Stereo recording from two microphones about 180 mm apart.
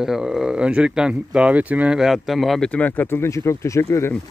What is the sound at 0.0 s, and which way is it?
Speech, centre (ahead or behind).